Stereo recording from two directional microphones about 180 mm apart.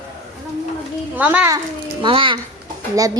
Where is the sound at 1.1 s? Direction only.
10° right (ahead or behind).